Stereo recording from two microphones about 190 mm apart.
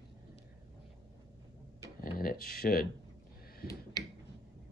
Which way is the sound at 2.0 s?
50° left (ahead or behind).